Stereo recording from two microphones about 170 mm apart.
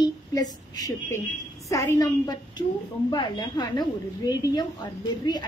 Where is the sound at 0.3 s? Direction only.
20° left (ahead or behind).